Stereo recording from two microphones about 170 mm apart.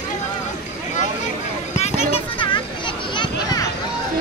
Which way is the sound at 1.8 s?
35° left (ahead or behind).